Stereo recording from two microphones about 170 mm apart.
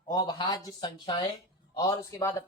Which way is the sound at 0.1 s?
25° left (ahead or behind).